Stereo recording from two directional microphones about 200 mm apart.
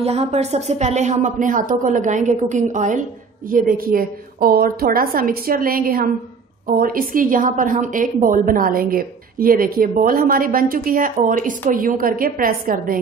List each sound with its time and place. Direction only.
0.0 s a woman's voice: 30° right (ahead or behind)